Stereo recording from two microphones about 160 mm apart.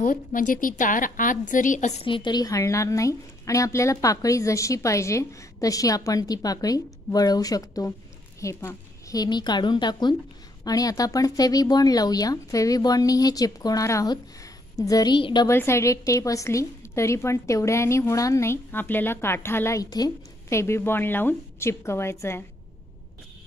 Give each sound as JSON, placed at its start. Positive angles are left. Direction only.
{"t": 0.0, "sound": "a woman's voice", "side_deg": 60}
{"t": 2.0, "sound": "a woman's voice", "side_deg": 30}
{"t": 15.4, "sound": "a woman's voice", "side_deg": 15}